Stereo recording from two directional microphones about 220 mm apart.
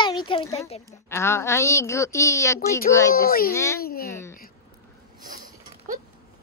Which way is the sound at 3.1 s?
40° left (ahead or behind).